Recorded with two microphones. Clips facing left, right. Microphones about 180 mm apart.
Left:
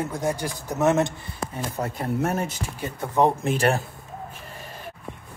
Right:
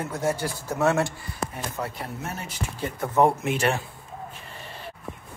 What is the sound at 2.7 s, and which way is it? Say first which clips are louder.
Speech: right 1 dB; 15° left (ahead or behind).